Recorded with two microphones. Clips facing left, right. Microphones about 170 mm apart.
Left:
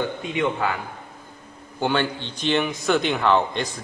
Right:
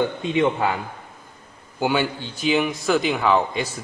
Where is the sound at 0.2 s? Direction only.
25° right (ahead or behind).